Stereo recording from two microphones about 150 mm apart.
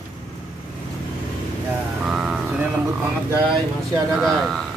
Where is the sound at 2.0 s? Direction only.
5° right (ahead or behind).